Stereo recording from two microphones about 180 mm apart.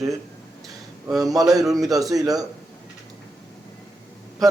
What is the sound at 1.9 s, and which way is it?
Speech, 20° right (ahead or behind).